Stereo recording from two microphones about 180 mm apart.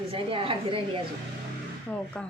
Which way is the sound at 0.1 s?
30° right (ahead or behind).